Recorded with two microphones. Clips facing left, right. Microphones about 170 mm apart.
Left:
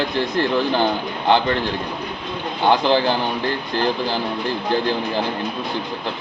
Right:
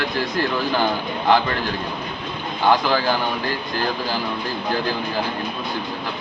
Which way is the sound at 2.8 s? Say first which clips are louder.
Left 3 dB; 25° left (ahead or behind).